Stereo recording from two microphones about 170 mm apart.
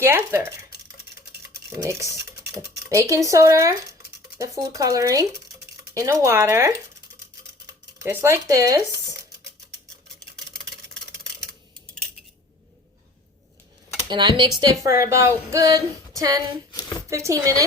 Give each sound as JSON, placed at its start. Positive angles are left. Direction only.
{"t": 0.0, "sound": "speech", "side_deg": -15}
{"t": 1.7, "sound": "speech", "side_deg": -20}
{"t": 7.9, "sound": "speech", "side_deg": -15}
{"t": 14.1, "sound": "speech", "side_deg": -25}